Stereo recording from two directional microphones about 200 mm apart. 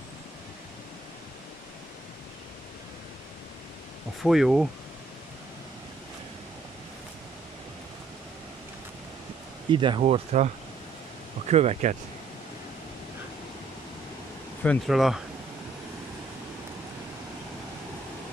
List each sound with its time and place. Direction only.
4.2 s speech: centre (ahead or behind)
9.7 s speech: 25° right (ahead or behind)
11.5 s speech: 30° right (ahead or behind)
14.6 s speech: centre (ahead or behind)